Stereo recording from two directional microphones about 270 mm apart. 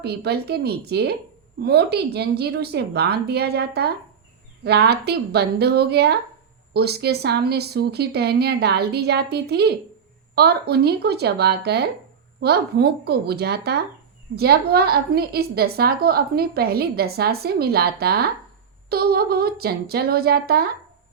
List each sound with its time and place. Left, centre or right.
0.0 s a woman's voice: right